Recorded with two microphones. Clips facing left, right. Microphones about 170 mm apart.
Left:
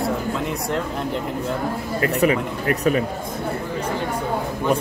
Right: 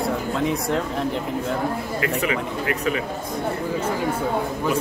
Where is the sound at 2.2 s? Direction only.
40° left (ahead or behind).